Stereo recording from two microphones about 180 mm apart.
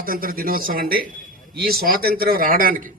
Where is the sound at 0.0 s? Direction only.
50° right (ahead or behind).